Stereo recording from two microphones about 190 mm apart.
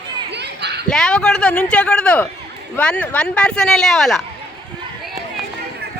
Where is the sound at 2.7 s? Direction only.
5° left (ahead or behind).